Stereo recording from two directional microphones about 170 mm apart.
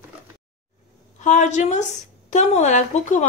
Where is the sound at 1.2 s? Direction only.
45° left (ahead or behind).